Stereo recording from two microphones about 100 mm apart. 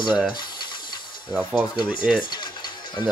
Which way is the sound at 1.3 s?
10° right (ahead or behind).